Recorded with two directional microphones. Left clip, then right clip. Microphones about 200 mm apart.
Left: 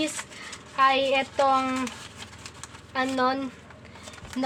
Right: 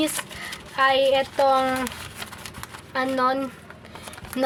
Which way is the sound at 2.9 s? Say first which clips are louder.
Right 3 dB; 15° right (ahead or behind).